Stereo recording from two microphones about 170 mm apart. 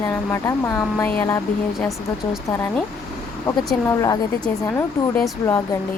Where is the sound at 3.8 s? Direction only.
20° left (ahead or behind).